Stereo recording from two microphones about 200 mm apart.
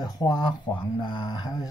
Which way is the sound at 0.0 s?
20° left (ahead or behind).